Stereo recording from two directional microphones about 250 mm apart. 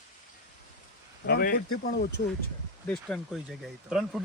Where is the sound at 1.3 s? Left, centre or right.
Left.